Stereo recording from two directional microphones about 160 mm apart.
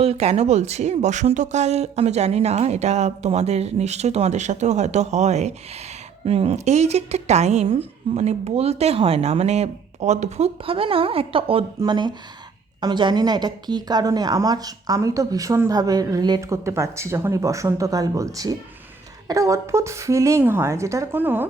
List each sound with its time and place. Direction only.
0.0 s a woman's voice: 40° right (ahead or behind); by 21.4 s 10° right (ahead or behind)